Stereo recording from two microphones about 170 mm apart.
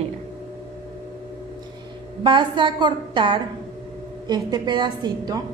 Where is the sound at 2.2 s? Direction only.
30° right (ahead or behind).